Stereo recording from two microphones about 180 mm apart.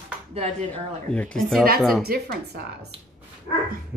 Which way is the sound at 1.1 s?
5° left (ahead or behind).